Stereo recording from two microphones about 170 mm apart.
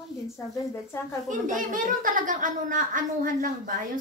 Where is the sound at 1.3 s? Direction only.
50° right (ahead or behind).